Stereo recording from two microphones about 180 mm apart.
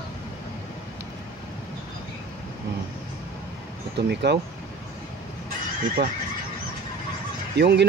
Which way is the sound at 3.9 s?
70° right (ahead or behind).